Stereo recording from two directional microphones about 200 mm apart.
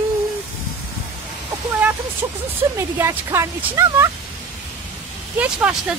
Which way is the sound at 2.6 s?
10° right (ahead or behind).